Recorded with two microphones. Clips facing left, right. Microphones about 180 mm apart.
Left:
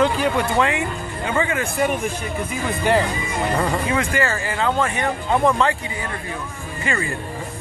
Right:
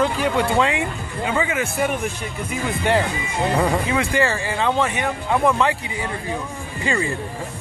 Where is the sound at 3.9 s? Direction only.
15° right (ahead or behind).